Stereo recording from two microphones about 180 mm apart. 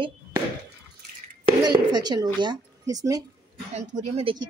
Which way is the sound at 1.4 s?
25° right (ahead or behind).